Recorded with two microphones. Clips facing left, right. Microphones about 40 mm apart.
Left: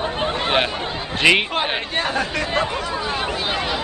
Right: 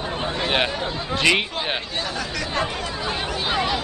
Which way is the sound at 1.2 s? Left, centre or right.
Centre.